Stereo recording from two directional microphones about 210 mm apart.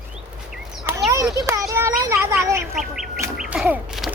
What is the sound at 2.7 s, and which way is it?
Duck, centre (ahead or behind).